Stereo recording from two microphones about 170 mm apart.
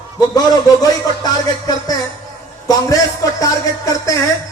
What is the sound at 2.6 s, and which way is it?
Speech, 20° left (ahead or behind).